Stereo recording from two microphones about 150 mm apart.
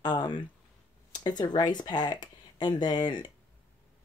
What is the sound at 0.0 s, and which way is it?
Speech, 30° left (ahead or behind).